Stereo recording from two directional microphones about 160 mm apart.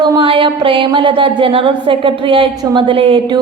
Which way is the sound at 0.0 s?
30° right (ahead or behind).